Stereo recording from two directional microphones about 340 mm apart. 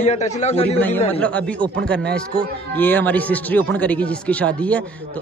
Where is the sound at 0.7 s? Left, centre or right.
Centre.